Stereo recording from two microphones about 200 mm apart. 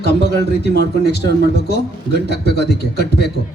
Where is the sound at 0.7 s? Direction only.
60° right (ahead or behind).